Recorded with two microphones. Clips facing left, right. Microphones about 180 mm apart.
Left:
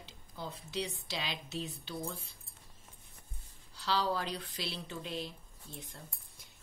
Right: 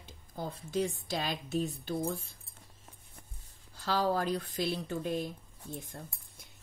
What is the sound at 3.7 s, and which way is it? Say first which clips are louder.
Speech: right 3 dB; 50° right (ahead or behind).